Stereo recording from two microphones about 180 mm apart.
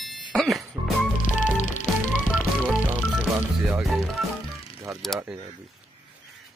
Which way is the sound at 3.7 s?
Centre (ahead or behind).